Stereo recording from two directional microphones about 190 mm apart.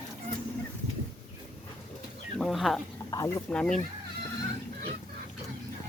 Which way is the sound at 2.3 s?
Centre (ahead or behind).